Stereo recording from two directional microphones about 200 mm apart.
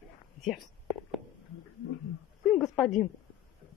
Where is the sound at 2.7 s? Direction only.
Centre (ahead or behind).